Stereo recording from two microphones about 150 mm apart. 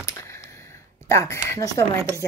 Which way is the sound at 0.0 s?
20° left (ahead or behind).